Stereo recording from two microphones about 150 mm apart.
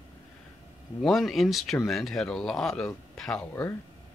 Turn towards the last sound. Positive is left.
turn(degrees=10)  # may be behind; listen again after turning